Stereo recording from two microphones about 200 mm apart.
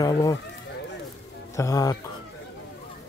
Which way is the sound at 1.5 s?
15° left (ahead or behind).